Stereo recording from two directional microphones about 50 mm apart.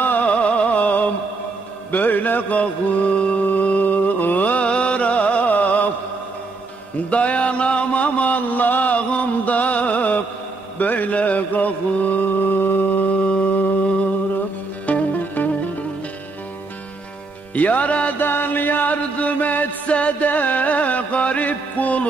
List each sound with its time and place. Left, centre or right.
0.0 s music: left
7.1 s a sound: left
10.8 s mantra: left
14.9 s music: left
17.6 s music: left
18.2 s music: left